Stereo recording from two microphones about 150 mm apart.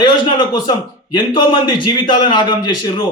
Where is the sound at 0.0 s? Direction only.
30° left (ahead or behind).